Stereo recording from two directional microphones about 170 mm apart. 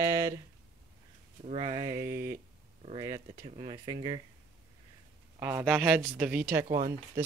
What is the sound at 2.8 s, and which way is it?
Speech, 30° right (ahead or behind).